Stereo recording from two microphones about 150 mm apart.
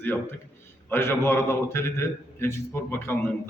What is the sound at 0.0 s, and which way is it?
A man's voice, 15° left (ahead or behind).